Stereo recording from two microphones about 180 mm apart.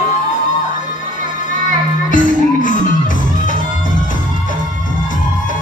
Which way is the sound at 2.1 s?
45° left (ahead or behind).